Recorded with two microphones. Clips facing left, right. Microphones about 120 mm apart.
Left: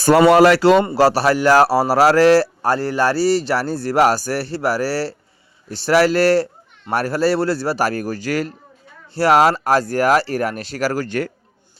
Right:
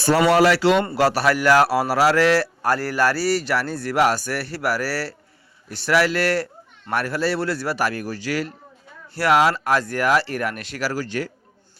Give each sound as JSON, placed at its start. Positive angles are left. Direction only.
{"t": 0.3, "sound": "a man's voice", "side_deg": 45}
{"t": 9.1, "sound": "a man's voice", "side_deg": 35}
{"t": 10.8, "sound": "speech", "side_deg": 50}